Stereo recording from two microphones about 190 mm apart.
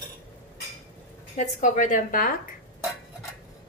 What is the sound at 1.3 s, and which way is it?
Speech, 40° left (ahead or behind).